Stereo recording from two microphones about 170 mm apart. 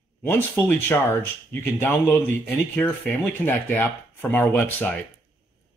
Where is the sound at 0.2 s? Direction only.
15° left (ahead or behind).